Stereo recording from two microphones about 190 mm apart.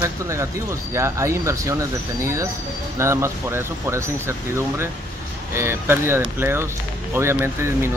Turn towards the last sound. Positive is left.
turn(degrees=-15)  # may be behind; listen again after turning